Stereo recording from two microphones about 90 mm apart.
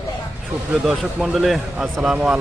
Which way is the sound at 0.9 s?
5° right (ahead or behind).